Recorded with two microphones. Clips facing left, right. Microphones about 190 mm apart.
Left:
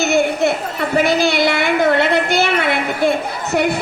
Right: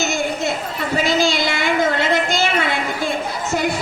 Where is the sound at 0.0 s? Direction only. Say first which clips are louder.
Left 6 dB; 60° left (ahead or behind).